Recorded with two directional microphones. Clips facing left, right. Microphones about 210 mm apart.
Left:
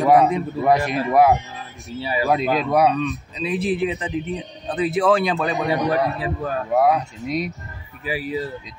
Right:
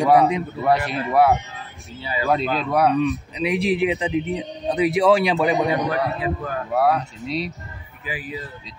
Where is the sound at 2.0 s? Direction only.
25° left (ahead or behind).